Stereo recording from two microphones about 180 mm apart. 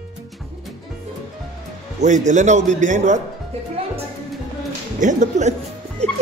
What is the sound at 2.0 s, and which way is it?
A man's voice, 40° right (ahead or behind).